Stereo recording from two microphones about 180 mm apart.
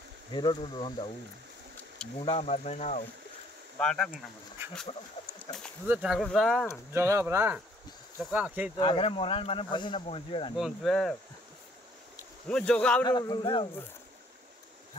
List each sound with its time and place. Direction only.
0.3 s speech: 25° left (ahead or behind)
2.2 s speech: 35° left (ahead or behind)
3.8 s speech: 5° left (ahead or behind)
5.9 s speech: centre (ahead or behind)
6.9 s speech: 15° right (ahead or behind)
8.7 s speech: 30° left (ahead or behind)
10.5 s speech: centre (ahead or behind)
12.4 s speech: 5° left (ahead or behind)
13.0 s speech: 25° left (ahead or behind)